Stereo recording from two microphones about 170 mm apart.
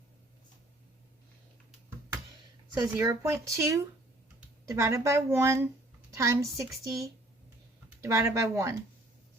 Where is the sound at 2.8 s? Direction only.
20° right (ahead or behind).